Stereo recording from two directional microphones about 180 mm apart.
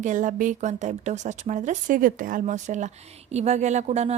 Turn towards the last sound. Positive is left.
turn(degrees=-35)  # may be behind; listen again after turning